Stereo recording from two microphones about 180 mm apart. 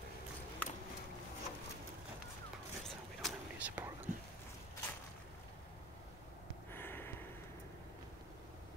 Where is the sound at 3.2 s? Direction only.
10° right (ahead or behind).